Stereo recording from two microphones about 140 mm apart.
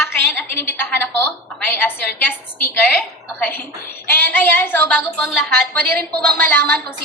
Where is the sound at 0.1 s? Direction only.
15° left (ahead or behind).